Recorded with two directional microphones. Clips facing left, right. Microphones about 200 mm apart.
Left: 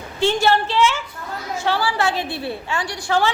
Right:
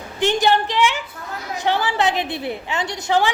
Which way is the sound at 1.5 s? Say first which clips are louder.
Right 1 dB; 20° right (ahead or behind).